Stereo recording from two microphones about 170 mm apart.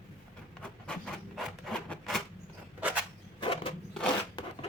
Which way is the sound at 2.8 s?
10° right (ahead or behind).